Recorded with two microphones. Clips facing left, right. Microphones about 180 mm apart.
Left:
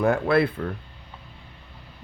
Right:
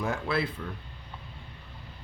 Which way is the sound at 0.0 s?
60° left (ahead or behind).